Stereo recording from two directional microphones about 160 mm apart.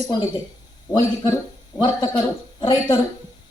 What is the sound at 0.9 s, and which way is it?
A woman's voice, 25° left (ahead or behind).